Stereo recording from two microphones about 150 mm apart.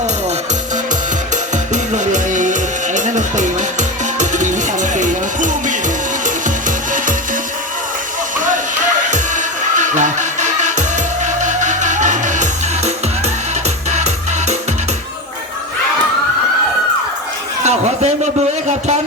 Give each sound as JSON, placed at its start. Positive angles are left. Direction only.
{"t": 1.7, "sound": "music", "side_deg": -55}
{"t": 9.0, "sound": "music", "side_deg": -55}
{"t": 13.9, "sound": "music", "side_deg": -50}
{"t": 17.6, "sound": "a sound", "side_deg": -50}